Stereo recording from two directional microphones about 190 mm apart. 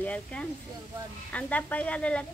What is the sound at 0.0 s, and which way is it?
Speech, 5° left (ahead or behind).